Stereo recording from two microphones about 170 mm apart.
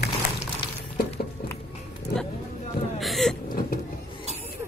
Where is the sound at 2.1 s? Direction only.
65° left (ahead or behind).